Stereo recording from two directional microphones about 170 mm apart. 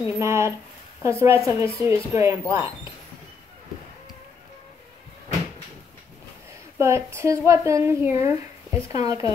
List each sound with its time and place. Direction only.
0.0 s a woman's voice: 15° right (ahead or behind)
6.8 s a woman's voice: 15° right (ahead or behind)